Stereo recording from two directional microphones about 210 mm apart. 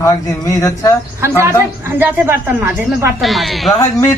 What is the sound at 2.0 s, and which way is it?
A woman's voice, 10° right (ahead or behind).